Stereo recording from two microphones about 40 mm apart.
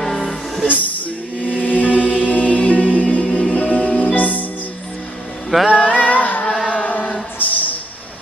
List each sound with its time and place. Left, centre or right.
0.0 s music: centre
0.7 s music: left
4.1 s music: left
5.8 s a sound: left
6.4 s music: centre
7.3 s a sound: left